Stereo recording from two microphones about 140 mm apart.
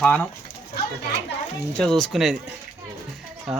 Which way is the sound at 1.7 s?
5° left (ahead or behind).